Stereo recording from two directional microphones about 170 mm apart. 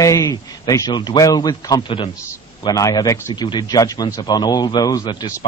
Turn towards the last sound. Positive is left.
turn(degrees=25)  # may be behind; listen again after turning